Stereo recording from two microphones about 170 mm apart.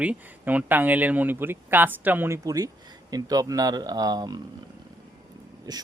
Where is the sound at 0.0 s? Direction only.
10° right (ahead or behind).